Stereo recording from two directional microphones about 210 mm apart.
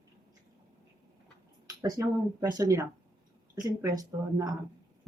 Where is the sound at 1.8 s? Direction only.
15° right (ahead or behind).